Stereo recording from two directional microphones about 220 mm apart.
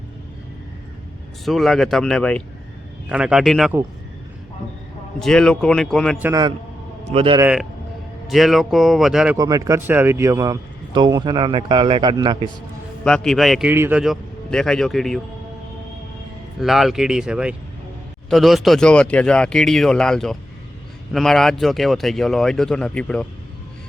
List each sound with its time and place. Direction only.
1.5 s a man's voice: centre (ahead or behind)
5.2 s a man's voice: 5° left (ahead or behind)
6.2 s a man's voice: 15° right (ahead or behind)
7.1 s a man's voice: 25° right (ahead or behind)
7.3 s a man's voice: 5° right (ahead or behind)
9.4 s a man's voice: 15° right (ahead or behind)
13.1 s a man's voice: 5° left (ahead or behind)
16.6 s a man's voice: centre (ahead or behind)